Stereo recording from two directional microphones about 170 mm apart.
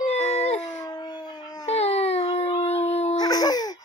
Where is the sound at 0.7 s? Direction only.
25° left (ahead or behind).